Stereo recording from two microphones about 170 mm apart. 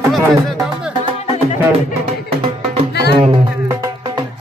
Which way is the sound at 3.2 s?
30° right (ahead or behind).